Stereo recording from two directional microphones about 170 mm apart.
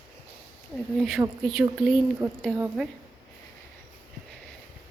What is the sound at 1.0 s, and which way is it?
A woman's voice, centre (ahead or behind).